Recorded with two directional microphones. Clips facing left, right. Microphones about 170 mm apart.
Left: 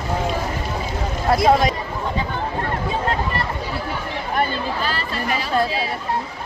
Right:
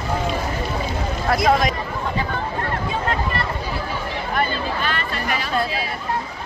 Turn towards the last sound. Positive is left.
turn(degrees=30)  # may be behind; listen again after turning